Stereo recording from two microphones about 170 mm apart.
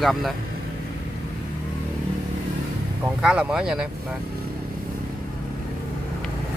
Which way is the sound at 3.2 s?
5° right (ahead or behind).